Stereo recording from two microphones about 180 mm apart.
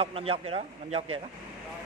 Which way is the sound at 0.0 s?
35° right (ahead or behind).